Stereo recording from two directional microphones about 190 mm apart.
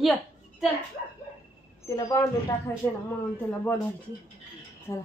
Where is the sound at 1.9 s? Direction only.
20° left (ahead or behind).